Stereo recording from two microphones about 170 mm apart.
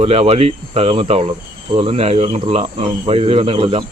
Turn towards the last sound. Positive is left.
turn(degrees=-35)  # may be behind; listen again after turning